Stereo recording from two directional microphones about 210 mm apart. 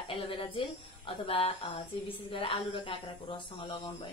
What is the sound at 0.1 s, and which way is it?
A woman's voice, 25° left (ahead or behind).